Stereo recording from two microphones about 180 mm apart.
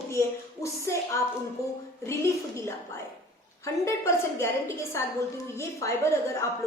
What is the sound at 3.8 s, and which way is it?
A woman's voice, 15° left (ahead or behind).